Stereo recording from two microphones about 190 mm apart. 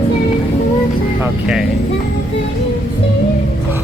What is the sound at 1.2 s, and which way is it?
Speech, 5° right (ahead or behind).